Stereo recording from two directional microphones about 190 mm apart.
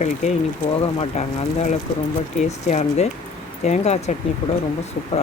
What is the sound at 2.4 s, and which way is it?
Speech, 35° left (ahead or behind).